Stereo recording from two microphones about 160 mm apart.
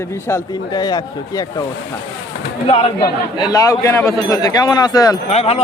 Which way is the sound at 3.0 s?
25° left (ahead or behind).